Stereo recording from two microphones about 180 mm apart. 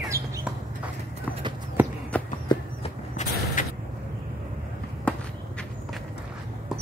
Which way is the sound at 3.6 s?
45° left (ahead or behind).